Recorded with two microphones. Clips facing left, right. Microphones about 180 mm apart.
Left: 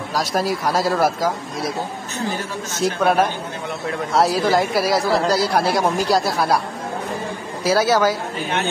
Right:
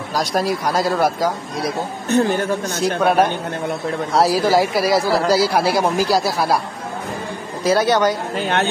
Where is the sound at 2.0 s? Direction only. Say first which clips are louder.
Right 9 dB; 60° right (ahead or behind).